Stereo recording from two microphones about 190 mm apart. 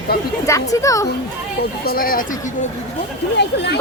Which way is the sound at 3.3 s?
65° left (ahead or behind).